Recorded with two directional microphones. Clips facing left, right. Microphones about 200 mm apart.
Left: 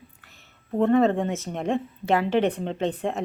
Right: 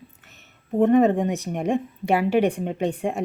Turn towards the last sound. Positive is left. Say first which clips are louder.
# right 2 dB
turn(degrees=-15)  # may be behind; listen again after turning